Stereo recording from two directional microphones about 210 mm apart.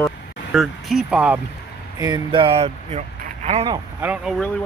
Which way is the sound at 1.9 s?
20° right (ahead or behind).